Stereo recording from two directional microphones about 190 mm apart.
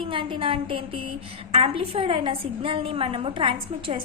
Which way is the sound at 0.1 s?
25° right (ahead or behind).